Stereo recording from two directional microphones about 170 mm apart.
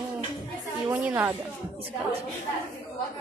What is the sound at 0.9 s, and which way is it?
Speech, 10° right (ahead or behind).